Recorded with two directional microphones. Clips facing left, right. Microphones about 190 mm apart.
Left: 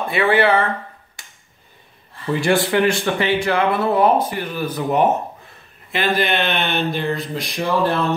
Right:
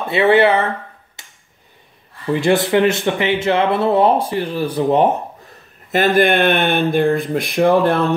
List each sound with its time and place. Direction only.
0.0 s speech: 25° right (ahead or behind)
1.2 s a sound: 25° right (ahead or behind)
2.3 s speech: 20° right (ahead or behind)
5.9 s speech: 45° right (ahead or behind)